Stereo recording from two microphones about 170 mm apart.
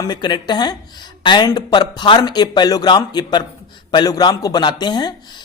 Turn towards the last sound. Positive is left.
turn(degrees=25)  # may be behind; listen again after turning